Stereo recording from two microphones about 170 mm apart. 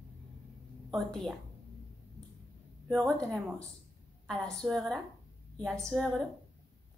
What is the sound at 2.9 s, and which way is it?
A woman's voice, centre (ahead or behind).